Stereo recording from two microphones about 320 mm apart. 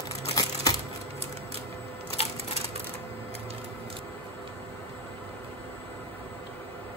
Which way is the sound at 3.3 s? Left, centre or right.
Centre.